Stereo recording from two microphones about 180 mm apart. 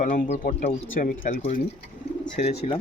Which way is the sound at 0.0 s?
50° left (ahead or behind).